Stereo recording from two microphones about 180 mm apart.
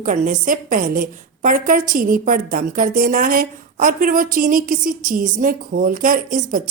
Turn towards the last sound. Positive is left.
turn(degrees=-50)  # may be behind; listen again after turning